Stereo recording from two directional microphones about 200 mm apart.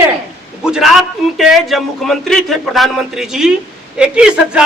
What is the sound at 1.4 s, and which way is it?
A man's voice, centre (ahead or behind).